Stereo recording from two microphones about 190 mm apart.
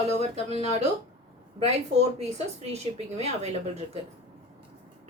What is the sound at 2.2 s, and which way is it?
A woman's voice, 35° right (ahead or behind).